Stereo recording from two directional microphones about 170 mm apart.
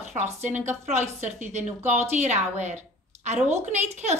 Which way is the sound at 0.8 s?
40° right (ahead or behind).